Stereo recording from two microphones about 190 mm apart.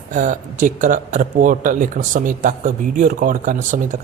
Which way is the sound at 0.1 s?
40° right (ahead or behind).